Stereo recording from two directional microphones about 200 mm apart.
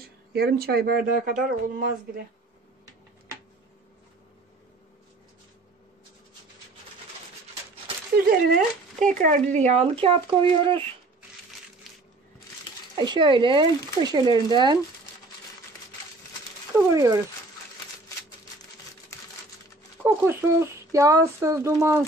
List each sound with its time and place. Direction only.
0.0 s speech: 50° right (ahead or behind)
8.5 s speech: 40° right (ahead or behind)
12.9 s speech: 25° right (ahead or behind)
16.7 s speech: 15° right (ahead or behind)
20.0 s speech: 10° right (ahead or behind)